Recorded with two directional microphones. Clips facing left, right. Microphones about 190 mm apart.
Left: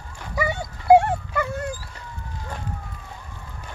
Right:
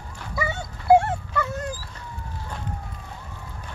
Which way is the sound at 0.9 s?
15° left (ahead or behind).